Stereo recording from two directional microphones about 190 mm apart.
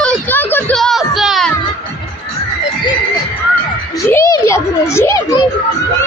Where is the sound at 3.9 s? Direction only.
15° left (ahead or behind).